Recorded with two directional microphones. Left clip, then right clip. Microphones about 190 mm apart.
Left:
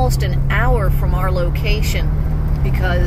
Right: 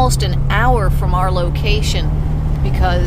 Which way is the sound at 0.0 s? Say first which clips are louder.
Right 4 dB; 15° right (ahead or behind).